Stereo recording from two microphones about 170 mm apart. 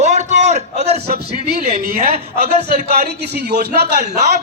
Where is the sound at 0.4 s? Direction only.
40° right (ahead or behind).